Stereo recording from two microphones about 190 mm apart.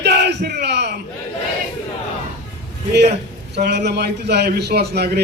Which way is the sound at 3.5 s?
60° right (ahead or behind).